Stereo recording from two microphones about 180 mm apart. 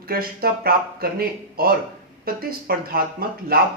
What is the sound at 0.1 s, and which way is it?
Speech, 55° right (ahead or behind).